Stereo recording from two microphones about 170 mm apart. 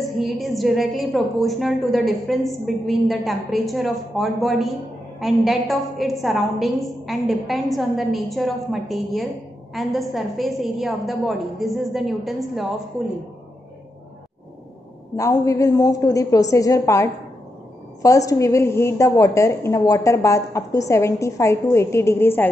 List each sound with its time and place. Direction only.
0.0 s a woman's voice: centre (ahead or behind)
15.1 s a woman's voice: 20° left (ahead or behind)